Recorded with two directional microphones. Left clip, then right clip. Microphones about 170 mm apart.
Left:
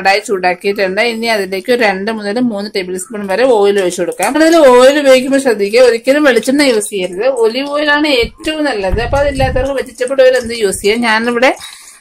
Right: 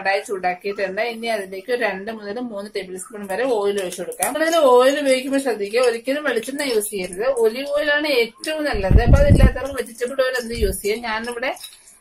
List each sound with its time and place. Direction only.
0.0 s speech: 55° left (ahead or behind)
7.0 s a woman's voice: 35° left (ahead or behind)
10.8 s speech: 50° left (ahead or behind)